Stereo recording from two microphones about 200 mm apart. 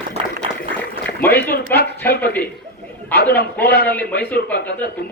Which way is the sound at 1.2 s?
10° left (ahead or behind).